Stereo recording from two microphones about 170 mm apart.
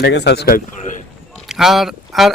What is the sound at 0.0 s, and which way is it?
Speech, 90° left.